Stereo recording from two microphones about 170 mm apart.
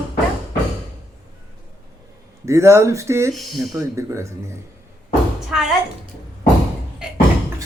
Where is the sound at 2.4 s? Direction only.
15° right (ahead or behind).